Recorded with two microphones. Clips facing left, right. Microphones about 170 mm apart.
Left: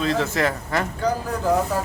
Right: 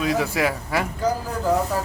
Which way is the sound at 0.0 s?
10° right (ahead or behind).